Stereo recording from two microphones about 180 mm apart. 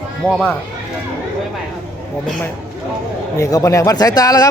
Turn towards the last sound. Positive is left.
turn(degrees=20)  # may be behind; listen again after turning